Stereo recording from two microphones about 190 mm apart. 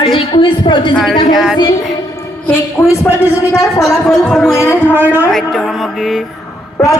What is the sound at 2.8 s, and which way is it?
A woman's voice, 15° left (ahead or behind).